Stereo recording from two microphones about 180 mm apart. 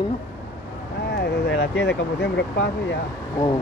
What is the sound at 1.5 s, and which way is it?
Vehicle, 80° left.